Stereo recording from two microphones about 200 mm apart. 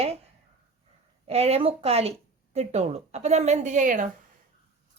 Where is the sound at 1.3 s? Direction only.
30° right (ahead or behind).